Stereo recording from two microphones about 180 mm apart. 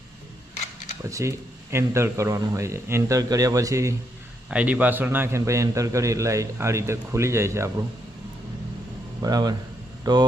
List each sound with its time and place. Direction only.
1.1 s a man's voice: 15° right (ahead or behind)
9.2 s speech: 20° right (ahead or behind)